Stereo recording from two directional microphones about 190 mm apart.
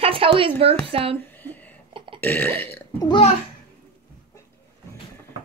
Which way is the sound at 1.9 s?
25° right (ahead or behind).